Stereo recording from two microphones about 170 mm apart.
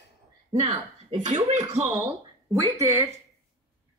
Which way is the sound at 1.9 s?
15° right (ahead or behind).